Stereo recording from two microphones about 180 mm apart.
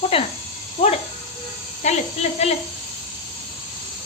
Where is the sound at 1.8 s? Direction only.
35° left (ahead or behind).